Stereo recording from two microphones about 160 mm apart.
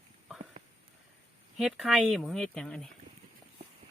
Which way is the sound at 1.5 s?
Centre (ahead or behind).